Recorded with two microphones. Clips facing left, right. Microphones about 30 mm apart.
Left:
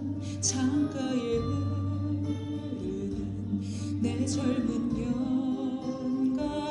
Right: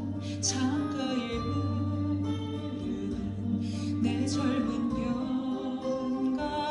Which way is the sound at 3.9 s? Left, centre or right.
Right.